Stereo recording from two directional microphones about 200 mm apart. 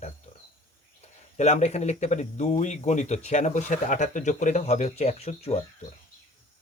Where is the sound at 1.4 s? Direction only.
35° left (ahead or behind).